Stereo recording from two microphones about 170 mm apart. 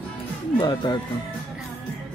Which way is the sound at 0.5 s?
25° left (ahead or behind).